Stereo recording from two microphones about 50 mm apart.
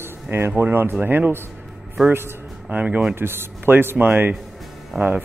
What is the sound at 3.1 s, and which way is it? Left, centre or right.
Speech, right.